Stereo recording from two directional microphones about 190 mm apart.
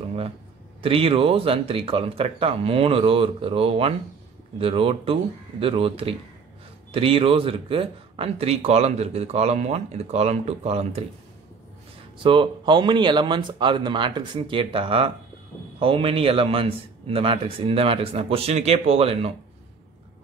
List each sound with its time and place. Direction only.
0.8 s a man's voice: 30° right (ahead or behind)
12.2 s a man's voice: 25° right (ahead or behind)